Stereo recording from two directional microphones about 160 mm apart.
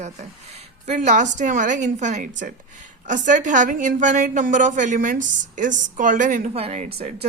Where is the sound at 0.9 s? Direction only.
50° right (ahead or behind).